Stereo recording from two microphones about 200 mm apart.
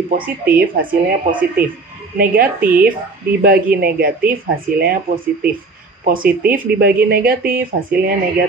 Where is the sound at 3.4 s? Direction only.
45° right (ahead or behind).